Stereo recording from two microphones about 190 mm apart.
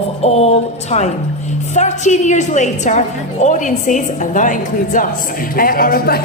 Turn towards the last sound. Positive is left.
turn(degrees=50)  # may be behind; listen again after turning